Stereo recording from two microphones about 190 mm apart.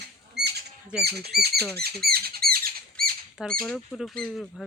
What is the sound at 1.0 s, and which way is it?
Speech, 55° right (ahead or behind).